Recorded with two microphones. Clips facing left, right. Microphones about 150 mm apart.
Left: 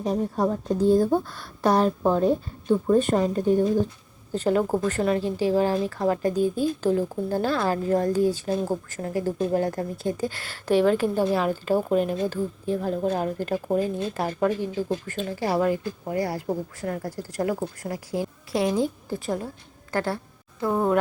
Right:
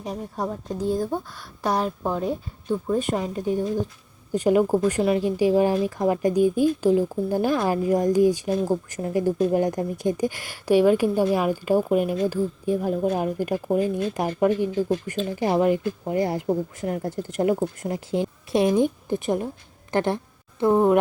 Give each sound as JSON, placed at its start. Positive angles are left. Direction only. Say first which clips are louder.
{"t": 0.3, "sound": "a woman's voice", "louder": "left 5 dB", "side_deg": -5}